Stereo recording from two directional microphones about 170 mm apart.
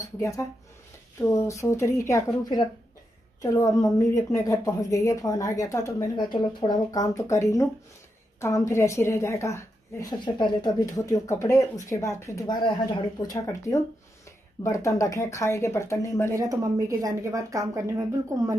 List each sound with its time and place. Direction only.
1.3 s a woman's voice: 15° left (ahead or behind)
16.3 s a woman's voice: 20° right (ahead or behind)